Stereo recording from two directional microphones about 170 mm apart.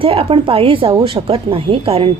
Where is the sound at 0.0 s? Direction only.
30° right (ahead or behind).